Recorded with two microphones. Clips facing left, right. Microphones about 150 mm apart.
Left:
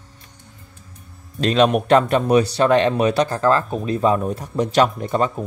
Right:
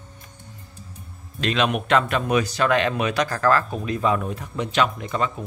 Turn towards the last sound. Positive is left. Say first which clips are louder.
# left 5 dB
turn(degrees=40)  # may be behind; listen again after turning